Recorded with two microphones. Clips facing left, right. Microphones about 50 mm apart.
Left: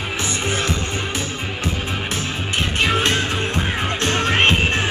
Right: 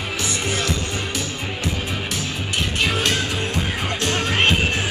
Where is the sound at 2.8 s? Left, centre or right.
Left.